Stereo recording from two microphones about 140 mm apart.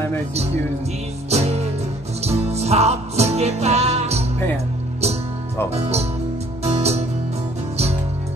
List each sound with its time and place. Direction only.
1.3 s music: 50° right (ahead or behind)
5.7 s speech: 50° right (ahead or behind)
6.6 s music: 50° right (ahead or behind)